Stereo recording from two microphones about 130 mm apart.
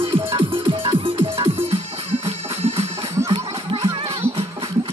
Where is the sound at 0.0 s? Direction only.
45° right (ahead or behind).